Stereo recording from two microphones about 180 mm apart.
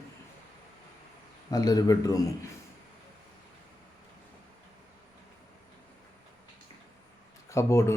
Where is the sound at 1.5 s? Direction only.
20° left (ahead or behind).